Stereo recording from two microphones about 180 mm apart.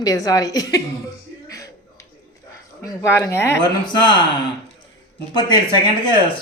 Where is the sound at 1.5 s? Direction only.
20° left (ahead or behind).